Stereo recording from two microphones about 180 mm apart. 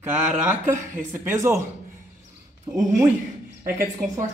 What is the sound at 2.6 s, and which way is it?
Speech, 20° right (ahead or behind).